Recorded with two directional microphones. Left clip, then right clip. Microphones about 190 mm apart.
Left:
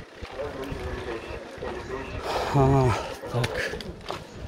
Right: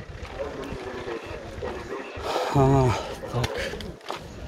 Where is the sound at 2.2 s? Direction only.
10° right (ahead or behind).